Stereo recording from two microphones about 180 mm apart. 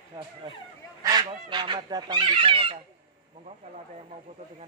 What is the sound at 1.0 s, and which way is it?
Speech, 25° right (ahead or behind).